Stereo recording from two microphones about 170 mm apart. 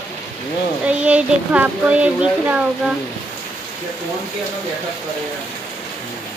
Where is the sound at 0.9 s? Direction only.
5° right (ahead or behind).